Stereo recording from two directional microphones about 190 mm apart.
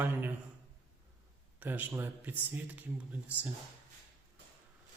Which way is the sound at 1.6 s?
10° right (ahead or behind).